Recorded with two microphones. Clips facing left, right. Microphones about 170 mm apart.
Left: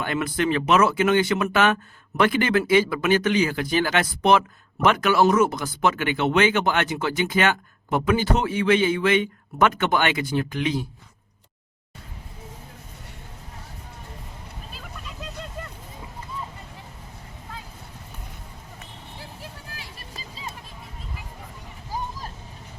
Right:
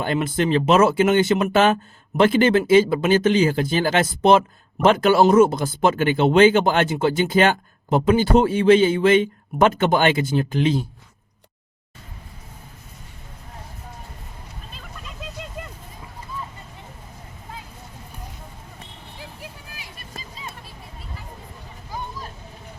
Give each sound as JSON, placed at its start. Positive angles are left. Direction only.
{"t": 0.0, "sound": "speech", "side_deg": -25}
{"t": 14.7, "sound": "vehicle", "side_deg": 5}
{"t": 19.4, "sound": "vehicle", "side_deg": -15}
{"t": 21.8, "sound": "a sound", "side_deg": 35}